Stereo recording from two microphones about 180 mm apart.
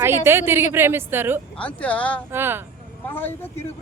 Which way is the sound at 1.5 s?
5° left (ahead or behind).